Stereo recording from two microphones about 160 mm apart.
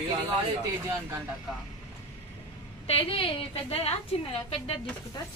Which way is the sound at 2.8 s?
35° left (ahead or behind).